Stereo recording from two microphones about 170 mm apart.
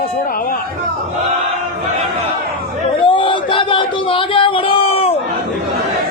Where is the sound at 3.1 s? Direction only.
30° left (ahead or behind).